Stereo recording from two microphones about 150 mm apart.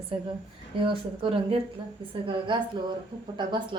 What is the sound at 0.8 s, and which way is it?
A woman's voice, 35° right (ahead or behind).